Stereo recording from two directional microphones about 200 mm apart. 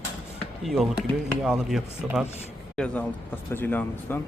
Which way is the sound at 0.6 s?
5° right (ahead or behind).